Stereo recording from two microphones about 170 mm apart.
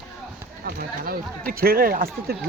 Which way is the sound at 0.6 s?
55° right (ahead or behind).